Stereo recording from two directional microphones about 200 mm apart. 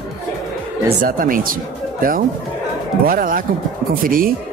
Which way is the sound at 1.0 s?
45° right (ahead or behind).